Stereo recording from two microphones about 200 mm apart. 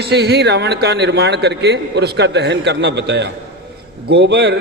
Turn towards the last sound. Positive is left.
turn(degrees=-60)  # may be behind; listen again after turning